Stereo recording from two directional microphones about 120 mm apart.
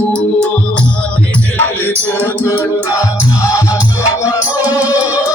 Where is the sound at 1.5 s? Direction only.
15° left (ahead or behind).